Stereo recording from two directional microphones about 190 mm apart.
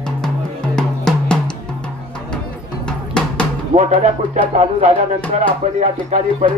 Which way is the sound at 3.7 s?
30° right (ahead or behind).